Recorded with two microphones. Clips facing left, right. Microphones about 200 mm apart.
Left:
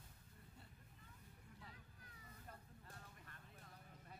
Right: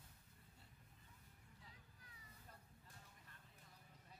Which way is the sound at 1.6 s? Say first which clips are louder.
Left 4 dB; 60° left (ahead or behind).